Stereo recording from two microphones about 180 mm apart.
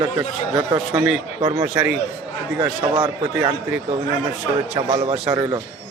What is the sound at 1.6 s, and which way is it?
Speech, 5° right (ahead or behind).